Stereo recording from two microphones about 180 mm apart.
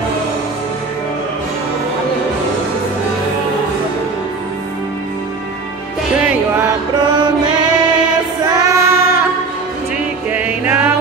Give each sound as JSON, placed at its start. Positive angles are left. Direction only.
{"t": 7.1, "sound": "music", "side_deg": -25}
{"t": 8.5, "sound": "child singing", "side_deg": -15}
{"t": 10.3, "sound": "music", "side_deg": -10}